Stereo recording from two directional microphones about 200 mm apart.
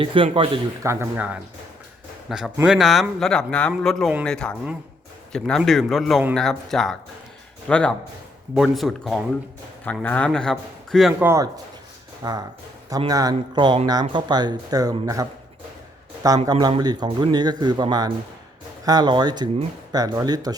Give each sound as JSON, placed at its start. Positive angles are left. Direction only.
{"t": 0.0, "sound": "speech", "side_deg": -25}
{"t": 0.8, "sound": "speech", "side_deg": -15}
{"t": 11.2, "sound": "speech", "side_deg": -10}
{"t": 16.5, "sound": "speech", "side_deg": -20}